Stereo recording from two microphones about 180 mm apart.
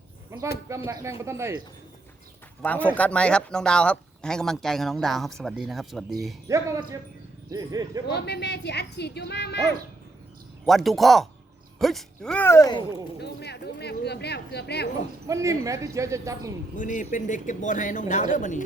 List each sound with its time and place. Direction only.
0.9 s speech: 15° right (ahead or behind)
2.6 s speech: 10° left (ahead or behind)
6.5 s speech: 15° right (ahead or behind)
8.0 s speech: 65° left (ahead or behind)
10.7 s speech: centre (ahead or behind); by 12.8 s 20° left (ahead or behind)
13.1 s speech: 65° left (ahead or behind)
15.3 s speech: 15° right (ahead or behind)
16.7 s speech: 45° left (ahead or behind)